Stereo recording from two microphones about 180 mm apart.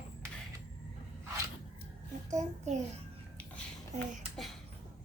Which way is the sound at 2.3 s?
40° right (ahead or behind).